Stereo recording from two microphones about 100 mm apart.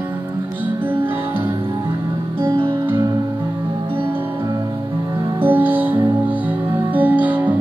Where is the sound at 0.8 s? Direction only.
20° right (ahead or behind).